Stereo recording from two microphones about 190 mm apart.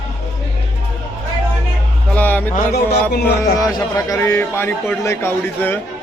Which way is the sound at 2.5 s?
55° left (ahead or behind).